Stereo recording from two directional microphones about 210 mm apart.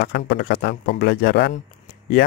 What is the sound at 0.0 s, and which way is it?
Speech, 50° left (ahead or behind).